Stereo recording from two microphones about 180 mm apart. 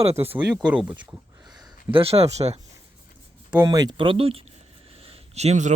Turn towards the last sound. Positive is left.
turn(degrees=-40)  # may be behind; listen again after turning